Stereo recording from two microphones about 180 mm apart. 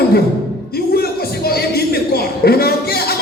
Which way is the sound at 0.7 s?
60° left (ahead or behind).